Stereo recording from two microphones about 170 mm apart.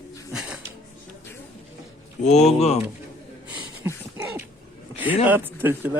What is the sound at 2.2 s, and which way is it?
Speech, 40° left (ahead or behind).